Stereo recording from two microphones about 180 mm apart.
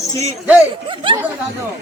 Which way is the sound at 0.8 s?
30° right (ahead or behind).